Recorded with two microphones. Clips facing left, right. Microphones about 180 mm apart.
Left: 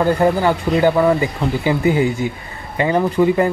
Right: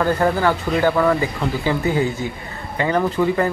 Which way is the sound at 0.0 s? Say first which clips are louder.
Left 3 dB; 15° left (ahead or behind).